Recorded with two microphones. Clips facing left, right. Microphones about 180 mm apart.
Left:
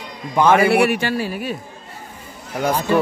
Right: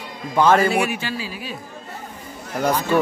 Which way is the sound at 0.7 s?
65° left (ahead or behind).